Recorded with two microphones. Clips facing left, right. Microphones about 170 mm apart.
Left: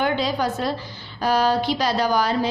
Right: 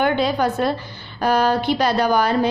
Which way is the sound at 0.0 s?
55° right (ahead or behind).